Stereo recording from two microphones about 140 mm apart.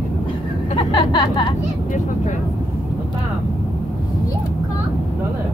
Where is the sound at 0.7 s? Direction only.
35° left (ahead or behind).